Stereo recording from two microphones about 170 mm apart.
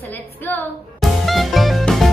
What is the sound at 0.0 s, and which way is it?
Female singing, 10° left (ahead or behind).